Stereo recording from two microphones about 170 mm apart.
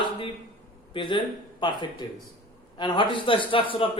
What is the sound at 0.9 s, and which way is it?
Speech, 30° left (ahead or behind).